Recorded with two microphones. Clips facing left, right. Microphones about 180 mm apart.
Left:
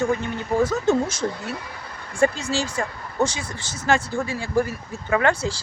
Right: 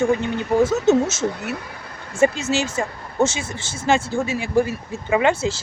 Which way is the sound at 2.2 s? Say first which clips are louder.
Right 3 dB; 20° right (ahead or behind).